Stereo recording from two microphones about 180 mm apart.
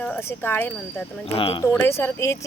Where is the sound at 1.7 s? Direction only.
10° left (ahead or behind).